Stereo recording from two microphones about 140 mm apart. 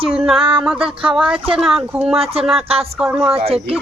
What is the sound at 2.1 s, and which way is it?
Speech, 45° right (ahead or behind).